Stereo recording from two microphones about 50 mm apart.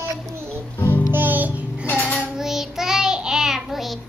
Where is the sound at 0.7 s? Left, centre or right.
Left.